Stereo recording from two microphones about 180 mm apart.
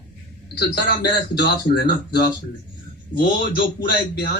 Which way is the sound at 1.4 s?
60° left (ahead or behind).